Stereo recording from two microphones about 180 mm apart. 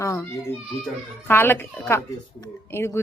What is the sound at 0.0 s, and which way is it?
Speech, 15° left (ahead or behind).